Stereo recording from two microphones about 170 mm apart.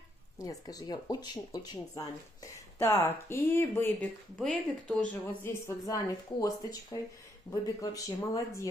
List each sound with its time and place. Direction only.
0.4 s speech: 20° left (ahead or behind)